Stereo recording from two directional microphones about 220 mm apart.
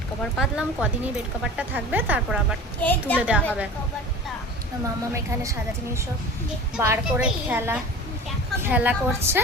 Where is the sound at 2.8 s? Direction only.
5° left (ahead or behind).